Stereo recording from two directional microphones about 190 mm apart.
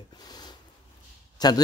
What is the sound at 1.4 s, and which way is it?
Speech, 20° left (ahead or behind).